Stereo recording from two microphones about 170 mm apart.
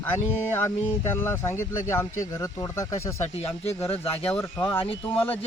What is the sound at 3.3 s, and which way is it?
Speech, 35° left (ahead or behind).